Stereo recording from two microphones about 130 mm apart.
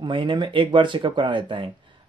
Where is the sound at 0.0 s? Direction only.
40° right (ahead or behind).